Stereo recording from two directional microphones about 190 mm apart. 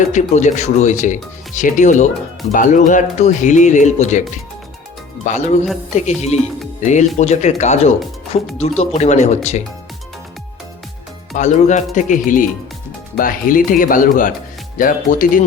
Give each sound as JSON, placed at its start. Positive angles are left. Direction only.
{"t": 0.1, "sound": "speech", "side_deg": 40}
{"t": 5.2, "sound": "speech", "side_deg": 40}
{"t": 11.3, "sound": "speech", "side_deg": 40}